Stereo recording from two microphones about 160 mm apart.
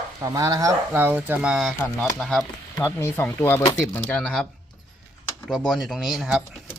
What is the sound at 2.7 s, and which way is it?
Speech, 15° left (ahead or behind).